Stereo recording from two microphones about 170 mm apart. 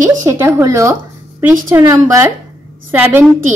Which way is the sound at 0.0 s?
20° right (ahead or behind).